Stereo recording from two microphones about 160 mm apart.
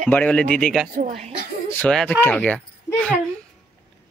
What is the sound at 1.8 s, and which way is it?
A woman's voice, 5° left (ahead or behind).